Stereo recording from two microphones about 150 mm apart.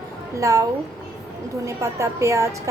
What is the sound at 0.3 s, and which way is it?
Speech, 20° right (ahead or behind).